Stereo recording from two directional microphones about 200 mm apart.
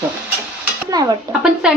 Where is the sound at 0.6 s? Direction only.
15° right (ahead or behind).